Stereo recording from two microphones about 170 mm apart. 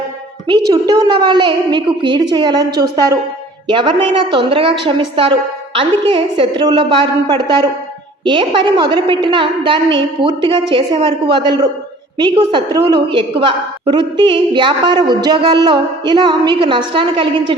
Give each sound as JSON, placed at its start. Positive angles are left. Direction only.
{"t": 0.7, "sound": "a woman's voice", "side_deg": -20}
{"t": 3.7, "sound": "a woman's voice", "side_deg": -30}